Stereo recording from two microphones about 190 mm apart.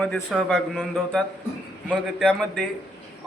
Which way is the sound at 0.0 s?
5° left (ahead or behind).